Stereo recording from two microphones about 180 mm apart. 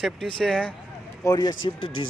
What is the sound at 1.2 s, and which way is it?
Speech, 20° left (ahead or behind).